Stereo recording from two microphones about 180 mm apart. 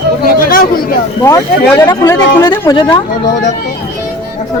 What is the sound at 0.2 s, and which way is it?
Chatter, 50° left (ahead or behind).